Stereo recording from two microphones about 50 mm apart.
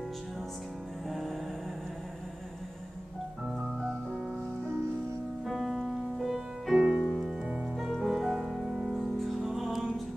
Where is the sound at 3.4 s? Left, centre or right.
Centre.